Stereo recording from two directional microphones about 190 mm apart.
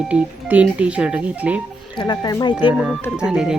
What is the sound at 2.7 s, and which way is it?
Speech, 5° right (ahead or behind).